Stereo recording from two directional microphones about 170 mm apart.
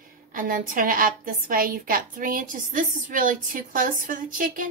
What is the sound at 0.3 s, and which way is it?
A woman's voice, 55° right (ahead or behind).